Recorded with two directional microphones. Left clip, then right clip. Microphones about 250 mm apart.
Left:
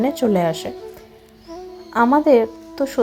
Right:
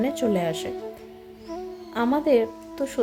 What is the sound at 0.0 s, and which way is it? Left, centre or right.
Speech, centre.